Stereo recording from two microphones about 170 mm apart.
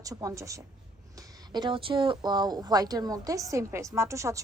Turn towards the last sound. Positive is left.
turn(degrees=-15)  # may be behind; listen again after turning